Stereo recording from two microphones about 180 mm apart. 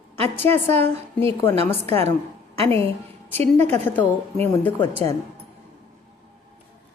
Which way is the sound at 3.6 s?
10° left (ahead or behind).